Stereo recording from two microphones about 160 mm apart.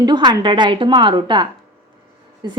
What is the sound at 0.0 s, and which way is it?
A woman's voice, 25° right (ahead or behind).